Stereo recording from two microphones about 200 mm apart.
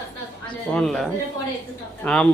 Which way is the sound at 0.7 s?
5° left (ahead or behind).